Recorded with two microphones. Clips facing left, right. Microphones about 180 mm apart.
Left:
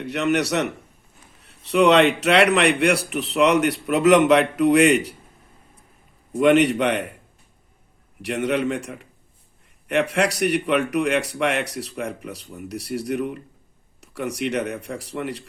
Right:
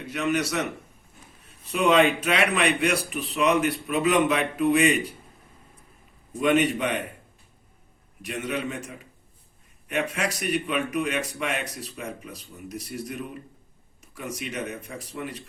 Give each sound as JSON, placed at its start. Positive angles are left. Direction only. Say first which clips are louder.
{"t": 0.0, "sound": "speech", "louder": "left 4 dB", "side_deg": 70}
{"t": 6.4, "sound": "speech", "louder": "left 6 dB", "side_deg": 75}
{"t": 8.2, "sound": "speech", "louder": "left 7 dB", "side_deg": 75}